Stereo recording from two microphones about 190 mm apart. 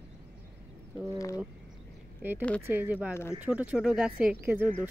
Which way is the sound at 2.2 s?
10° right (ahead or behind).